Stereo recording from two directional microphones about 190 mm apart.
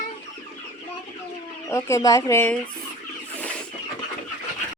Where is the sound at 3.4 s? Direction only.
5° left (ahead or behind).